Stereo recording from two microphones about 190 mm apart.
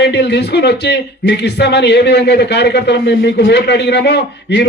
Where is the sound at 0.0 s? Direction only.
65° left (ahead or behind).